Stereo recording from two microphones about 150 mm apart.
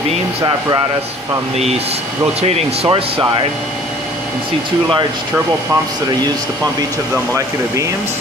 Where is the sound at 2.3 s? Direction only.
45° right (ahead or behind).